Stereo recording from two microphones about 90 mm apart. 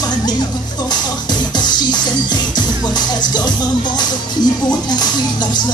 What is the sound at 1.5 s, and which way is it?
Music, 55° left (ahead or behind).